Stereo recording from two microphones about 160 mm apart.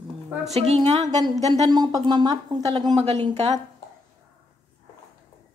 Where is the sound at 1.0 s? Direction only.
25° right (ahead or behind).